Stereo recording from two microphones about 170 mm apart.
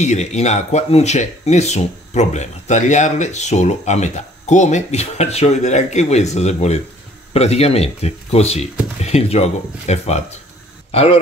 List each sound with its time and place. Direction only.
0.0 s speech: 40° left (ahead or behind)